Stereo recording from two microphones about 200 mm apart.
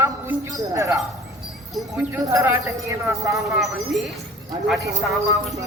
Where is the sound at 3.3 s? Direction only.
Centre (ahead or behind).